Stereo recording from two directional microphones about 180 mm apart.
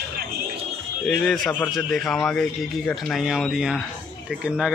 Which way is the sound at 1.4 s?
5° left (ahead or behind).